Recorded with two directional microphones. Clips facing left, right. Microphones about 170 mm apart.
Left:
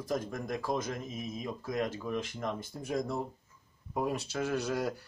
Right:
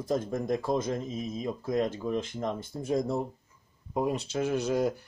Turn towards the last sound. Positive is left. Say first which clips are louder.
# right 5 dB
turn(degrees=-20)  # may be behind; listen again after turning